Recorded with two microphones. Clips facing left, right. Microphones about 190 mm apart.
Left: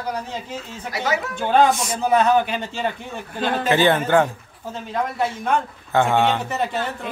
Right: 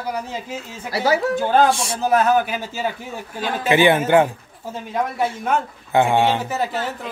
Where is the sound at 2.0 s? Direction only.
Centre (ahead or behind).